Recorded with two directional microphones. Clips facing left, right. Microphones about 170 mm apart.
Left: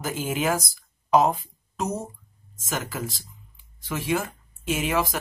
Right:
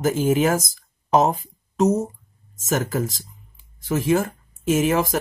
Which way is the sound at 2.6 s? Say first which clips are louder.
Right 8 dB; 45° right (ahead or behind).